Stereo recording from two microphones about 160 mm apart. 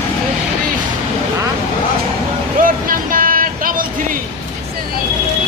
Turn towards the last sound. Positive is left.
turn(degrees=-60)  # may be behind; listen again after turning